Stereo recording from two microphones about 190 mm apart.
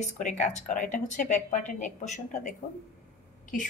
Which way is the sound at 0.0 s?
40° left (ahead or behind).